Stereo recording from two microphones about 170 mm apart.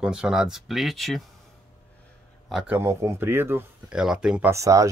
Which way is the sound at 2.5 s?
5° right (ahead or behind).